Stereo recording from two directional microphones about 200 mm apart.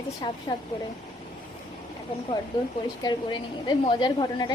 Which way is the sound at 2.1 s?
25° left (ahead or behind).